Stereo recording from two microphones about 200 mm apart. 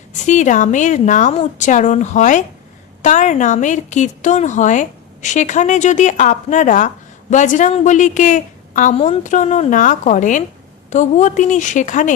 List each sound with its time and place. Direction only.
0.1 s a woman's voice: 35° left (ahead or behind)